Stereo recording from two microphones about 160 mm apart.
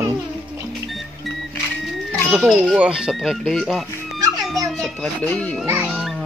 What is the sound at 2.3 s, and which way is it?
A child's voice, 5° right (ahead or behind).